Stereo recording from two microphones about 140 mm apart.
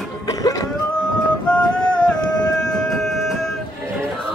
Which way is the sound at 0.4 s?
25° left (ahead or behind).